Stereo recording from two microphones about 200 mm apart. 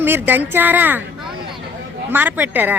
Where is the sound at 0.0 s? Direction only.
10° right (ahead or behind).